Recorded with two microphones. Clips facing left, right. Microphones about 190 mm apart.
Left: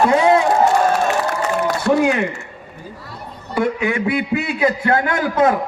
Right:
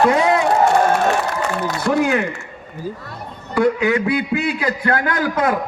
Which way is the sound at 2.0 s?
25° left (ahead or behind).